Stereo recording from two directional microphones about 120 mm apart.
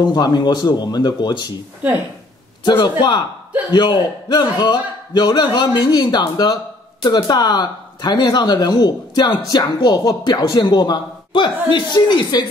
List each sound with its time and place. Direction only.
0.0 s a man's voice: 35° left (ahead or behind)
1.8 s speech: 15° right (ahead or behind)
3.0 s a man's voice: 40° left (ahead or behind)